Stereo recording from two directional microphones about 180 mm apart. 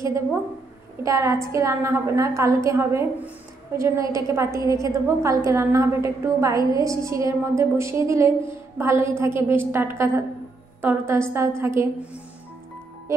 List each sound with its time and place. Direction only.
1.0 s a woman's voice: 20° right (ahead or behind)